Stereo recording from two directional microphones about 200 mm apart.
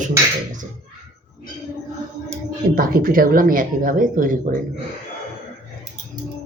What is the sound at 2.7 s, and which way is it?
Speech, 45° right (ahead or behind).